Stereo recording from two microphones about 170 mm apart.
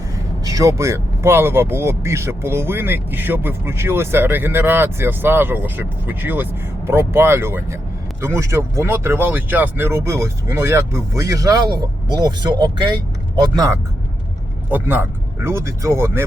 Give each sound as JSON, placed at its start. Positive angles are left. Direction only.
{"t": 0.4, "sound": "speech", "side_deg": -20}
{"t": 14.7, "sound": "speech", "side_deg": -10}